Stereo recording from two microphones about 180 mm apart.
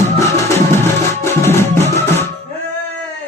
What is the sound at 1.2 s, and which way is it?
Music, 15° left (ahead or behind).